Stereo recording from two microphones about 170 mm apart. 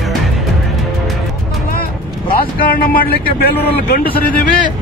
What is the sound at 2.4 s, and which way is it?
A man's voice, 60° left (ahead or behind).